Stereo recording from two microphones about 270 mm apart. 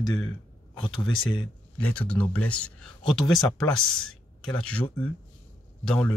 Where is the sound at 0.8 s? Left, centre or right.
Centre.